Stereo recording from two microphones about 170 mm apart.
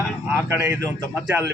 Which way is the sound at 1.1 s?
10° right (ahead or behind).